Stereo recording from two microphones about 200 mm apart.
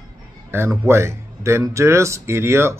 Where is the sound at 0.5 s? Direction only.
10° right (ahead or behind).